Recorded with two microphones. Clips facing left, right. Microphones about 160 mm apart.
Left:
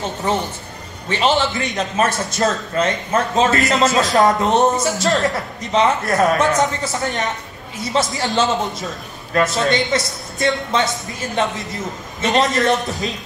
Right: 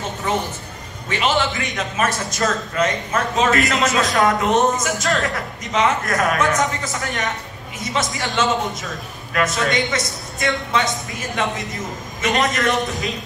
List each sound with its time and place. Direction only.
0.3 s a man's voice: 35° left (ahead or behind)